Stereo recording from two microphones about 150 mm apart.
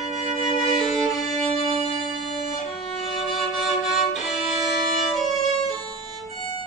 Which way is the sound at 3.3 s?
Centre (ahead or behind).